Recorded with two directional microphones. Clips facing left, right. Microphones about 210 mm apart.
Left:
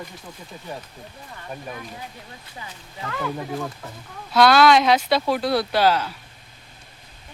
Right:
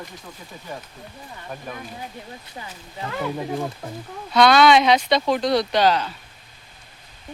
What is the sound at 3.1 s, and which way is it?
Speech, 20° right (ahead or behind).